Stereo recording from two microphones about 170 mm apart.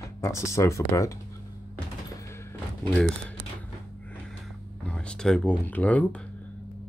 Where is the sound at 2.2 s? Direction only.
15° left (ahead or behind).